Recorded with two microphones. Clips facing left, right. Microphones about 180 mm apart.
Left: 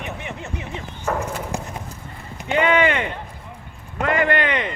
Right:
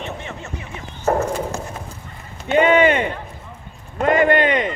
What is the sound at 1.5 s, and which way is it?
Horse, 15° left (ahead or behind).